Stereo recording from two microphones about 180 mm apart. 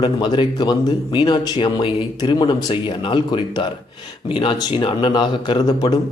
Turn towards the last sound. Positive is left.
turn(degrees=25)  # may be behind; listen again after turning